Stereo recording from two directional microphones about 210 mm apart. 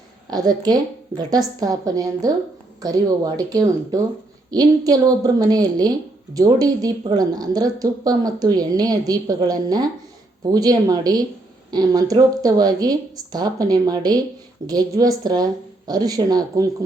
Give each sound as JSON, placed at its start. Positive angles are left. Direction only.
{"t": 0.3, "sound": "a woman's voice", "side_deg": -20}